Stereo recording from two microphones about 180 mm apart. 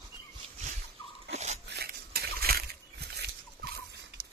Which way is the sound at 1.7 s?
60° right (ahead or behind).